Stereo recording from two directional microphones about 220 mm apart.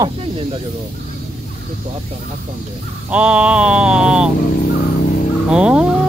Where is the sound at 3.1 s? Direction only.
5° right (ahead or behind).